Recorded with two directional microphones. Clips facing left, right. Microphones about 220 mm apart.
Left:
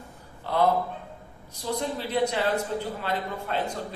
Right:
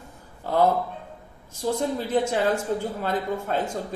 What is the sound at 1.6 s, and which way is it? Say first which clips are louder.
Speech: right 4 dB; 45° right (ahead or behind).